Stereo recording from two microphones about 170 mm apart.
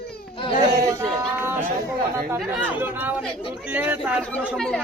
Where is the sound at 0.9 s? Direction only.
20° right (ahead or behind).